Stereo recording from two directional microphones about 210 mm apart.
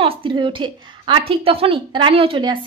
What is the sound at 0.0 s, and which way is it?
A woman's voice, 25° right (ahead or behind).